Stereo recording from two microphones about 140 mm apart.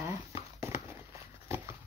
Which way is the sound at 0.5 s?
20° right (ahead or behind).